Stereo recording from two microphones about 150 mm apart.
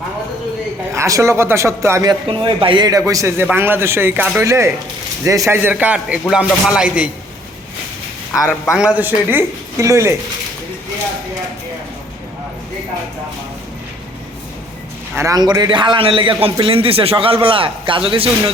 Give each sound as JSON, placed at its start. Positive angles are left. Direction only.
{"t": 0.9, "sound": "speech", "side_deg": -20}
{"t": 8.3, "sound": "a man's voice", "side_deg": 15}
{"t": 8.8, "sound": "speech", "side_deg": -10}
{"t": 15.1, "sound": "a man's voice", "side_deg": -20}